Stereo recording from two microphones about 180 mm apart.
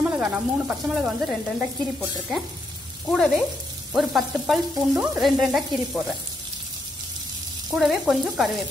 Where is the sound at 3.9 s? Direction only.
Centre (ahead or behind).